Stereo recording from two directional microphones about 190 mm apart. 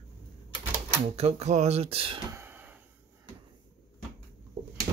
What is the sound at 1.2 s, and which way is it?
Speech, 35° right (ahead or behind).